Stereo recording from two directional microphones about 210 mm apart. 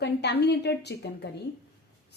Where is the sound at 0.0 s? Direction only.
50° left (ahead or behind).